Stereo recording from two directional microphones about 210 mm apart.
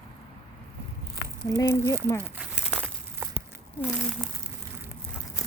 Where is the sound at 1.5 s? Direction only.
65° left (ahead or behind).